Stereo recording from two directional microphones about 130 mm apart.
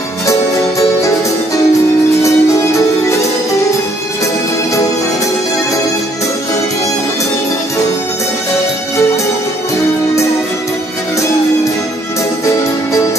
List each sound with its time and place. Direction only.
0.3 s music: 25° left (ahead or behind)
2.2 s music: 25° left (ahead or behind)